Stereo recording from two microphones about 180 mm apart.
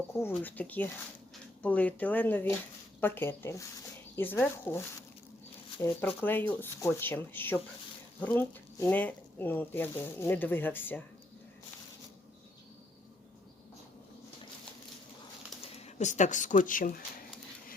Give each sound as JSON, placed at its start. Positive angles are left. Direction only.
{"t": 0.1, "sound": "speech", "side_deg": 15}
{"t": 15.6, "sound": "speech", "side_deg": 35}